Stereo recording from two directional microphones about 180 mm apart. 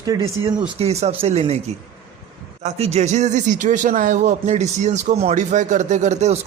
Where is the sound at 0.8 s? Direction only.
35° right (ahead or behind).